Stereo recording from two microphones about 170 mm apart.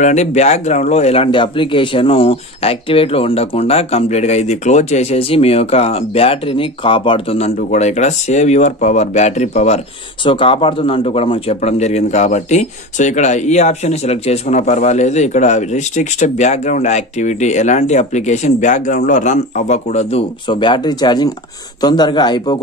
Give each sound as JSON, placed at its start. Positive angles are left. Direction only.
{"t": 0.0, "sound": "speech", "side_deg": 40}
{"t": 10.2, "sound": "speech", "side_deg": 30}